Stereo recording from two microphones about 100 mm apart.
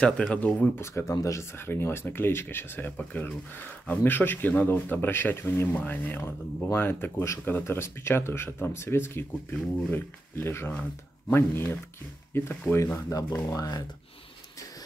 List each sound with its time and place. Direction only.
0.0 s speech: 10° left (ahead or behind)
0.7 s speech: 25° left (ahead or behind)
10.7 s speech: 10° left (ahead or behind)
11.3 s speech: 25° left (ahead or behind)
13.5 s speech: 40° left (ahead or behind)